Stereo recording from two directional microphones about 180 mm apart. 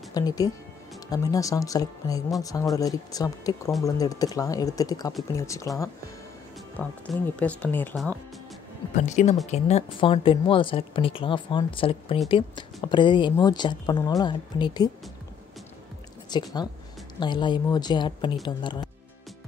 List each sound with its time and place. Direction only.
0.2 s speech: 20° left (ahead or behind)
8.9 s speech: 40° left (ahead or behind); by 14.9 s 25° left (ahead or behind)
16.3 s speech: 25° left (ahead or behind)